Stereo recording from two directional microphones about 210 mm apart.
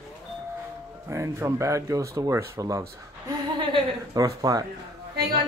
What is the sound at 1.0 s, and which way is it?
Speech, 15° right (ahead or behind).